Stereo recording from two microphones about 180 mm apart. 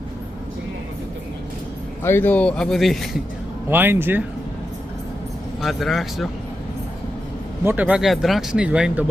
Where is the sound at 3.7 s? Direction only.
10° right (ahead or behind).